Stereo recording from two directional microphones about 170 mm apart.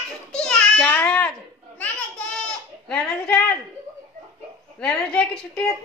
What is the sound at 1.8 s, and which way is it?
Child singing, 5° left (ahead or behind).